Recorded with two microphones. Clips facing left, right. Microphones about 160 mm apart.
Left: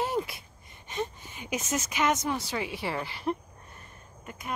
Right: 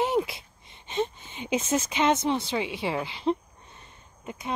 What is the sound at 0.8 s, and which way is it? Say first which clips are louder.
A woman's voice: right 5 dB; 25° right (ahead or behind).